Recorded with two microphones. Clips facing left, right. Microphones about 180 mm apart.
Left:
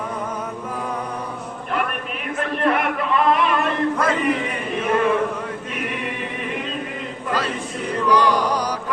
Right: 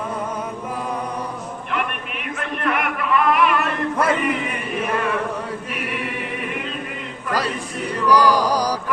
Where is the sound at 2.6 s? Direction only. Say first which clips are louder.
Left 2 dB; 30° left (ahead or behind).